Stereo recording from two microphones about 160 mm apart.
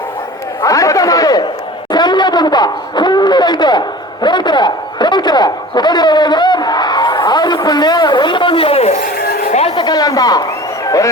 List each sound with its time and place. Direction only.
0.6 s a man's voice: 20° left (ahead or behind); by 9.0 s 40° left (ahead or behind)
9.1 s a sound: 70° left (ahead or behind)
9.5 s a man's voice: 40° left (ahead or behind); by 11.1 s 20° left (ahead or behind)